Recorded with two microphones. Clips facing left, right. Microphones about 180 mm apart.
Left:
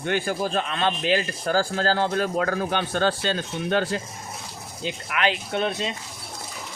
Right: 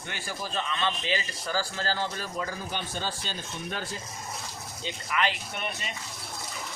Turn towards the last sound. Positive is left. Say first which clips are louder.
# left 10 dB
turn(degrees=90)